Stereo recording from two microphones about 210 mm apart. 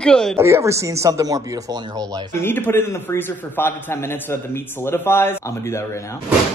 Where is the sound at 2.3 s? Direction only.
10° left (ahead or behind).